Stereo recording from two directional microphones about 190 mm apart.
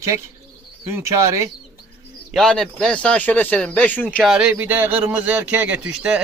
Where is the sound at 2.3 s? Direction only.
Centre (ahead or behind).